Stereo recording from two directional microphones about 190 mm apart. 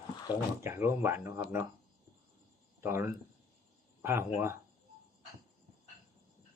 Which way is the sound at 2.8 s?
10° right (ahead or behind).